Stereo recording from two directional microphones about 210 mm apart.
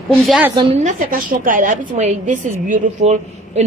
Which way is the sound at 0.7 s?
40° right (ahead or behind).